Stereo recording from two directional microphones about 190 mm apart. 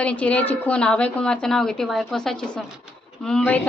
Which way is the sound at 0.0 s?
5° left (ahead or behind).